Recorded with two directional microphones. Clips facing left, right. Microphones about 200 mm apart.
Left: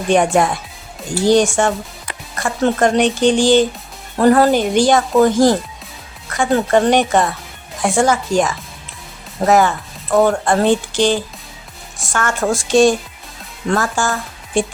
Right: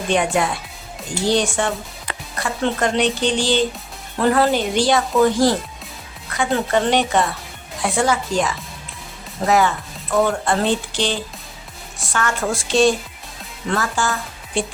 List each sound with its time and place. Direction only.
0.1 s speech: 45° left (ahead or behind)